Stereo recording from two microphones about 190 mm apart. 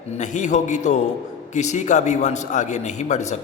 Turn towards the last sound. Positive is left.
turn(degrees=35)  # may be behind; listen again after turning